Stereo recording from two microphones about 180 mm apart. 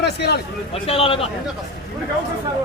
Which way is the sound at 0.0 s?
65° left (ahead or behind).